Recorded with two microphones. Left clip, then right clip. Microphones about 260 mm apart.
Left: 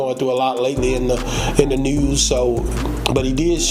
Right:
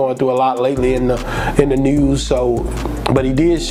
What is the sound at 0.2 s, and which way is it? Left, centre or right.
Speech, right.